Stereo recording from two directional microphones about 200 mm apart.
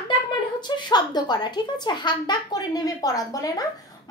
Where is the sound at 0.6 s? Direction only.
20° left (ahead or behind).